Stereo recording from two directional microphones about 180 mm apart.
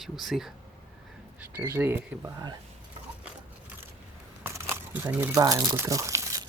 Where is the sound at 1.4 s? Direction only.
10° right (ahead or behind).